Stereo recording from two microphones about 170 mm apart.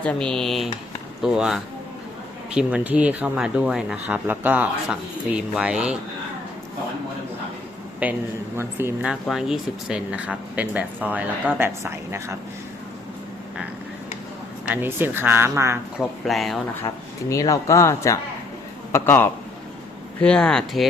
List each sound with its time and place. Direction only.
0.0 s speech: 5° left (ahead or behind)
8.0 s speech: 10° right (ahead or behind)
9.2 s speech: centre (ahead or behind)
14.7 s speech: 10° right (ahead or behind)
16.0 s speech: centre (ahead or behind)
16.8 s a man's voice: 20° left (ahead or behind); by 20.8 s 5° left (ahead or behind)